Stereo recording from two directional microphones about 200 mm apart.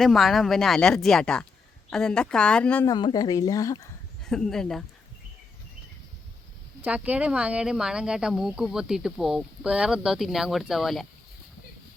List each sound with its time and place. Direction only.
0.0 s speech: centre (ahead or behind)
2.9 s speech: 20° left (ahead or behind)
4.2 s speech: 5° left (ahead or behind)
6.8 s speech: 5° right (ahead or behind)